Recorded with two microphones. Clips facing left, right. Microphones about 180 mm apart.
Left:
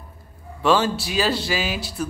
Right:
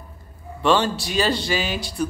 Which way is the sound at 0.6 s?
5° left (ahead or behind).